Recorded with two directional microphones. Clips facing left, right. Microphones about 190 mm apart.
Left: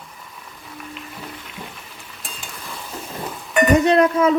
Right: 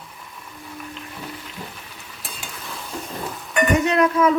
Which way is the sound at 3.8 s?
30° left (ahead or behind).